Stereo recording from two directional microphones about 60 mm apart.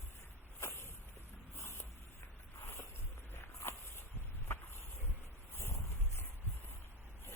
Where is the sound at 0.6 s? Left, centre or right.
Left.